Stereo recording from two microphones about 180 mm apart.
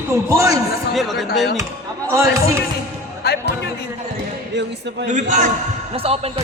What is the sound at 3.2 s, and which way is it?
Speech, 60° left (ahead or behind).